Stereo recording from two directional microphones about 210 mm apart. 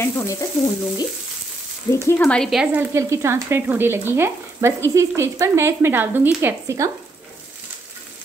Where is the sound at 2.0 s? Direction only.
5° left (ahead or behind); by 6.9 s 15° right (ahead or behind).